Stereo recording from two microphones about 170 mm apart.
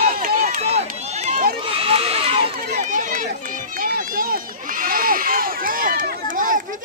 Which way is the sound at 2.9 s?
50° right (ahead or behind).